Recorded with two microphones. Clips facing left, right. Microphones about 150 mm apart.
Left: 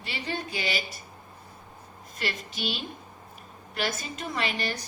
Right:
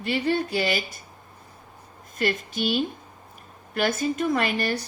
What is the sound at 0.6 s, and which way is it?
Speech, 50° right (ahead or behind).